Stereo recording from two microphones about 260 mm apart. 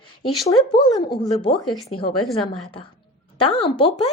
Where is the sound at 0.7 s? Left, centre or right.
Centre.